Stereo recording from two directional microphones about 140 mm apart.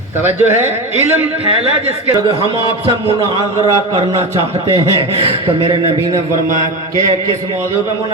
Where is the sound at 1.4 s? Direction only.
45° right (ahead or behind).